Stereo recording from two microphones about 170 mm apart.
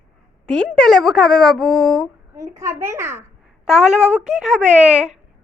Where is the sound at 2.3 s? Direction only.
15° right (ahead or behind).